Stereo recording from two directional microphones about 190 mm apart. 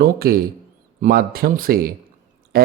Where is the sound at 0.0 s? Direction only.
50° right (ahead or behind).